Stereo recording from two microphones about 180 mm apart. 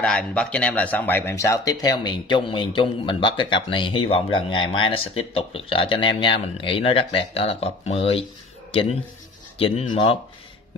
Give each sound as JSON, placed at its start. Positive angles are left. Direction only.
{"t": 0.0, "sound": "speech", "side_deg": 5}